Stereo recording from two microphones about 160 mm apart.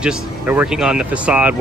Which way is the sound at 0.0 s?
10° right (ahead or behind).